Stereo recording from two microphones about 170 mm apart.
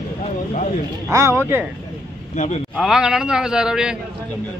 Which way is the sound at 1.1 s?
15° right (ahead or behind).